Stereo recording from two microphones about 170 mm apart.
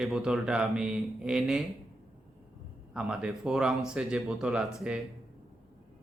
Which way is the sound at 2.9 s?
5° right (ahead or behind).